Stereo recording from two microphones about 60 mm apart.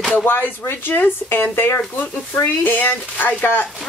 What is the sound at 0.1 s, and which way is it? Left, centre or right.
Speech, left.